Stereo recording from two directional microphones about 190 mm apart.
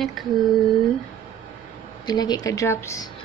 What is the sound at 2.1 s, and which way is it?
Speech, 20° left (ahead or behind).